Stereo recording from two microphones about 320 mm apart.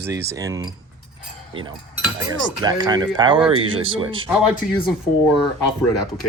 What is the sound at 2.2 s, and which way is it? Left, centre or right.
Speech, centre.